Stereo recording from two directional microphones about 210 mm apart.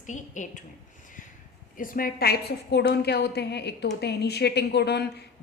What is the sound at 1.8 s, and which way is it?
A woman's voice, 40° left (ahead or behind).